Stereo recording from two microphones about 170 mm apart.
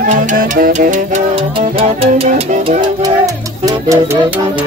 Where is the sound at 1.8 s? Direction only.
35° right (ahead or behind).